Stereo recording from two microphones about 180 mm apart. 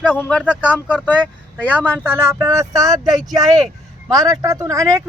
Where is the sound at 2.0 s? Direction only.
10° right (ahead or behind).